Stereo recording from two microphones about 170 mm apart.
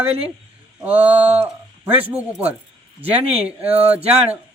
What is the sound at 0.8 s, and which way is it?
Speech, 10° right (ahead or behind).